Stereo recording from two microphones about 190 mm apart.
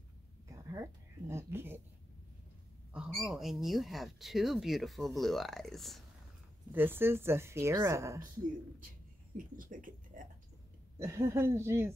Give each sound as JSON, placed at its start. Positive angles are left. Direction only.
{"t": 0.5, "sound": "speech", "side_deg": -15}
{"t": 2.9, "sound": "speech", "side_deg": -5}
{"t": 6.7, "sound": "a woman's voice", "side_deg": -10}
{"t": 9.4, "sound": "speech", "side_deg": -45}
{"t": 11.0, "sound": "a woman's voice", "side_deg": -15}